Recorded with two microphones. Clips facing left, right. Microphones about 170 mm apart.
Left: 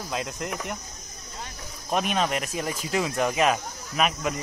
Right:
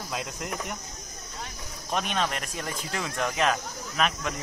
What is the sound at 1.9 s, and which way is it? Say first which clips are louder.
Speech: left 3 dB; 5° left (ahead or behind).